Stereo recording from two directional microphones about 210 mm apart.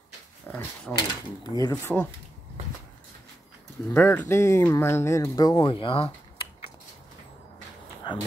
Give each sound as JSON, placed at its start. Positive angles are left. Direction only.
{"t": 0.5, "sound": "speech", "side_deg": 5}
{"t": 3.9, "sound": "speech", "side_deg": 10}
{"t": 8.1, "sound": "speech", "side_deg": 20}